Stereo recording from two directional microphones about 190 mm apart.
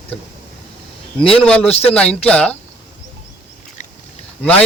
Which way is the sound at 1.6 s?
30° left (ahead or behind).